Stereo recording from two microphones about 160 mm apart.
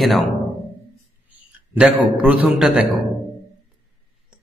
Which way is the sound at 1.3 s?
10° right (ahead or behind).